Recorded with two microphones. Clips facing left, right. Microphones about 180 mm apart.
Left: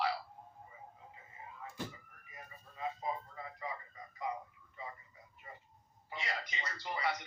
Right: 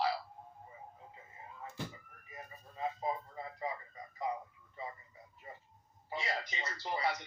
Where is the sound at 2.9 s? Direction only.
30° right (ahead or behind).